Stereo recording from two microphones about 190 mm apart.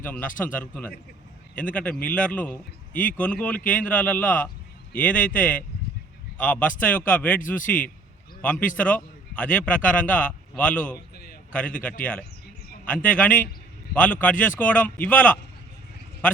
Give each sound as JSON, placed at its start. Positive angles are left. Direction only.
{"t": 0.0, "sound": "a man's voice", "side_deg": 10}
{"t": 11.1, "sound": "a sound", "side_deg": 55}
{"t": 11.5, "sound": "a man's voice", "side_deg": 5}